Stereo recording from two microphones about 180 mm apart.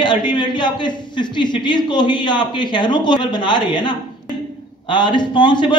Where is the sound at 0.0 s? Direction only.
25° left (ahead or behind).